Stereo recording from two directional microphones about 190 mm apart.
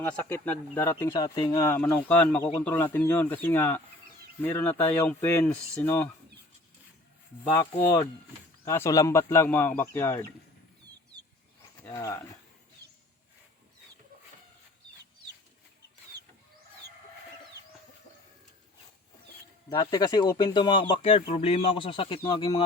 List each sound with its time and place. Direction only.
0.0 s speech: 10° left (ahead or behind)
7.5 s speech: 15° left (ahead or behind)
11.9 s speech: 15° left (ahead or behind)
16.1 s a sound: 60° right (ahead or behind)
19.8 s speech: 20° left (ahead or behind)